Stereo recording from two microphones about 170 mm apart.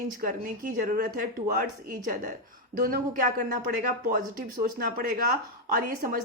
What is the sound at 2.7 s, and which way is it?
Speech, 55° right (ahead or behind).